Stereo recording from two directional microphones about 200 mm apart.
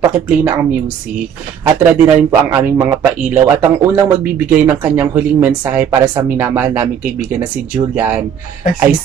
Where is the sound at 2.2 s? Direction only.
10° right (ahead or behind).